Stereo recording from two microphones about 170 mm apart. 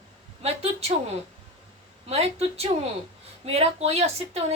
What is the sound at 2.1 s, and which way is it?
Speech, 35° right (ahead or behind).